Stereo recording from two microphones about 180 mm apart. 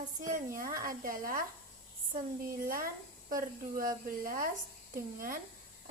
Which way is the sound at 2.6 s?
50° right (ahead or behind).